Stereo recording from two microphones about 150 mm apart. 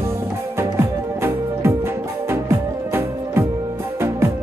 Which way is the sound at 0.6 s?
15° right (ahead or behind).